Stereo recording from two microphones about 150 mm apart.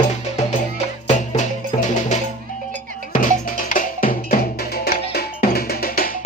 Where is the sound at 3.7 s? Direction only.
65° left (ahead or behind).